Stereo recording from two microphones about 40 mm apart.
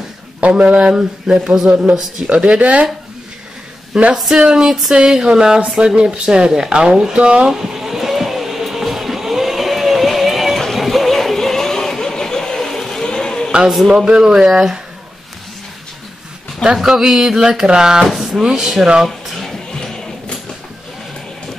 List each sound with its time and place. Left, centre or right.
0.4 s speech: right; by 1.7 s centre
2.2 s speech: right
3.9 s speech: centre
7.6 s vehicle: centre
10.7 s a sound: centre
13.7 s speech: centre
16.7 s speech: centre
19.7 s a sound: centre